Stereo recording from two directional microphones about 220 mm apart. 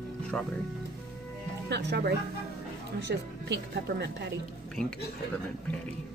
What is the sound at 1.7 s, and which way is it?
Music, 50° right (ahead or behind).